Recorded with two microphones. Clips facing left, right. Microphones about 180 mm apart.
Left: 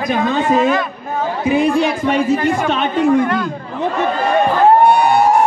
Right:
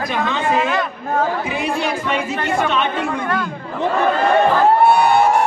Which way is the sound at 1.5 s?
40° left (ahead or behind).